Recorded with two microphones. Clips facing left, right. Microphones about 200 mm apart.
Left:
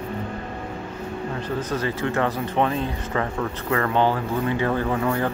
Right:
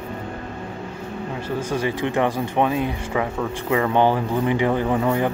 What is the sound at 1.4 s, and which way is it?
Speech, 10° right (ahead or behind).